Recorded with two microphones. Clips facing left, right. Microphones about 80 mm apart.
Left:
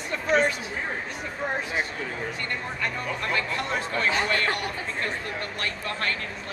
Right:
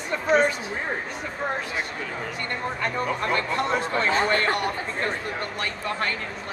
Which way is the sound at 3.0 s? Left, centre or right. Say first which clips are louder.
Right 5 dB; right.